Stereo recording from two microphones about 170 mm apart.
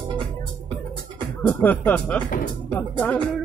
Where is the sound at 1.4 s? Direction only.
10° left (ahead or behind).